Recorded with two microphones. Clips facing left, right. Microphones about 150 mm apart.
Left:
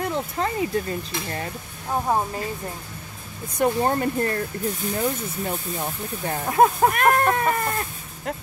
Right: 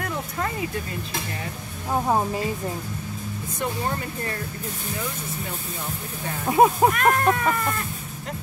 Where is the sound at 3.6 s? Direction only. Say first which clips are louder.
Left 7 dB; 45° left (ahead or behind).